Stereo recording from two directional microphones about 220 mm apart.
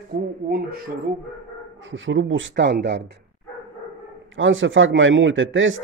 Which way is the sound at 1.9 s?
60° right (ahead or behind).